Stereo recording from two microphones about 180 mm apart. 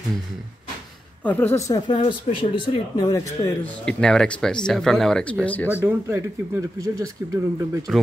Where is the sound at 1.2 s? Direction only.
10° left (ahead or behind).